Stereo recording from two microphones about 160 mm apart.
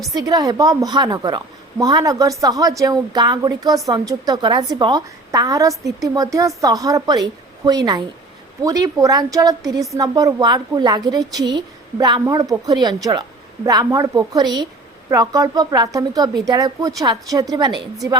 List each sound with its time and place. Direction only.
0.0 s a woman's voice: 25° right (ahead or behind)